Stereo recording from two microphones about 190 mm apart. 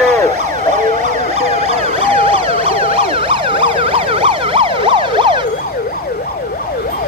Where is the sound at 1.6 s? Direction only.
30° right (ahead or behind).